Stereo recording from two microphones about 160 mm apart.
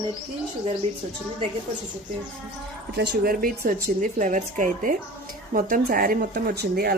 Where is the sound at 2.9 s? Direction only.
80° right.